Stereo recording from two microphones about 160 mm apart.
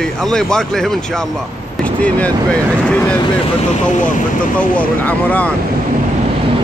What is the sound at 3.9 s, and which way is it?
Speech, 55° left (ahead or behind).